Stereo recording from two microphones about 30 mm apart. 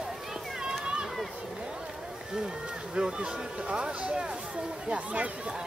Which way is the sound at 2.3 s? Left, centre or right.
Right.